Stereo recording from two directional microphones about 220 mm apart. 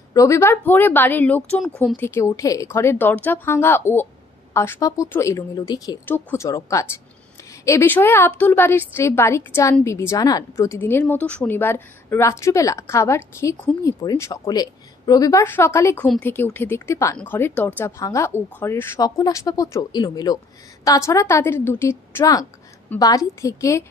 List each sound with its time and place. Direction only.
0.1 s a woman's voice: 15° left (ahead or behind)